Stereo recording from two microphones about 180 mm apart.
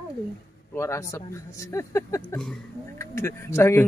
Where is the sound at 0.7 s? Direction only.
15° left (ahead or behind).